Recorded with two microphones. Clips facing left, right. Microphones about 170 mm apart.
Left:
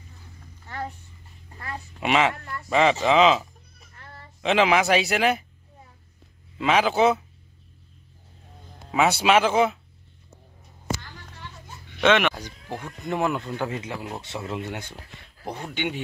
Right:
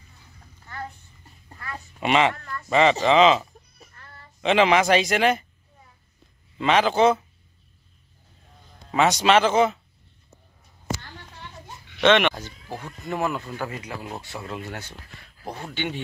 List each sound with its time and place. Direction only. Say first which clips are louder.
2.0 s speech: right 1 dB; centre (ahead or behind)
6.6 s speech: right 1 dB; 5° left (ahead or behind)
9.2 s speech: right 1 dB; 5° left (ahead or behind)
12.0 s speech: right 2 dB; 5° left (ahead or behind)
12.4 s speech: left 1 dB; 15° left (ahead or behind)
15.4 s speech: left 1 dB; centre (ahead or behind)
15.7 s speech: left 1 dB; 10° left (ahead or behind)